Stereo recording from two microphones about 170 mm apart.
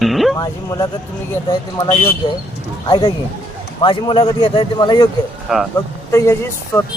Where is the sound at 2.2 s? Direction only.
30° left (ahead or behind).